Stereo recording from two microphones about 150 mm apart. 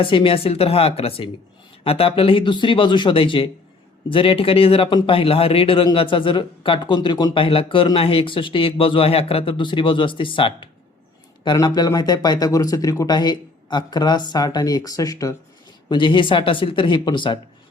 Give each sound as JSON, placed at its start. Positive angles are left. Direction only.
{"t": 0.0, "sound": "a man's voice", "side_deg": 35}